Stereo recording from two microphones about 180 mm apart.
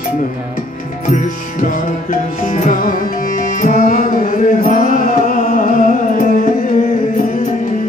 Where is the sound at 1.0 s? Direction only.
45° left (ahead or behind).